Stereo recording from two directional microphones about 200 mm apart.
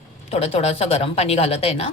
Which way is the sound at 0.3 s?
30° left (ahead or behind).